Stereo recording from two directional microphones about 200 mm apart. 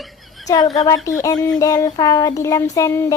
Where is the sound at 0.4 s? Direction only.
20° left (ahead or behind).